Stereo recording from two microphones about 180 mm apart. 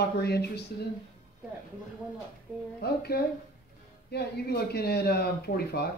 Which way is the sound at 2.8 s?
60° left (ahead or behind).